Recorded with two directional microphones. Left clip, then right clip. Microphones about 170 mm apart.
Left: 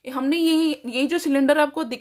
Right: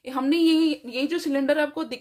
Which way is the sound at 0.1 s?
15° left (ahead or behind).